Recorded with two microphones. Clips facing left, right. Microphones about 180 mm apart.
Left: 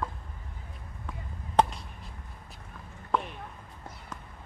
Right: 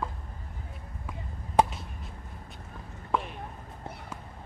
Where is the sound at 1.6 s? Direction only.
10° right (ahead or behind).